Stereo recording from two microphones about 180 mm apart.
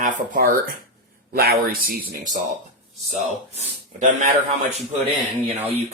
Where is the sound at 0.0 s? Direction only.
45° right (ahead or behind).